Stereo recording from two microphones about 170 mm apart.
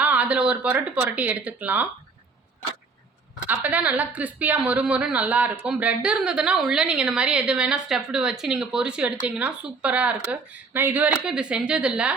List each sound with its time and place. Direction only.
0.0 s a woman's voice: 10° right (ahead or behind)
3.4 s a woman's voice: 10° right (ahead or behind)